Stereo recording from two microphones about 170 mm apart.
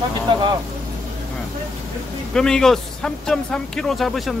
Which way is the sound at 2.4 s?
5° left (ahead or behind).